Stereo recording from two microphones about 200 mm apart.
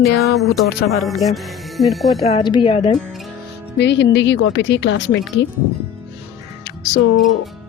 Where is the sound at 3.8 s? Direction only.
60° left (ahead or behind).